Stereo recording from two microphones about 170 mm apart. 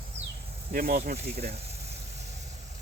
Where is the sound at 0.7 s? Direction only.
65° right (ahead or behind).